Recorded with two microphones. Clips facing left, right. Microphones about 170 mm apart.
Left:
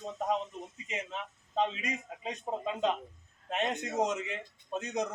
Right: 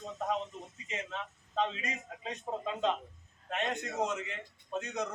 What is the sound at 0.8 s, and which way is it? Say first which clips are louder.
A man's voice: even; 15° left (ahead or behind).